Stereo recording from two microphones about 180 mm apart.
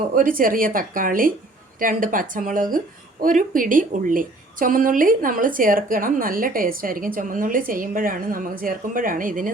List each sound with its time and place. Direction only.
0.1 s a woman's voice: 50° right (ahead or behind)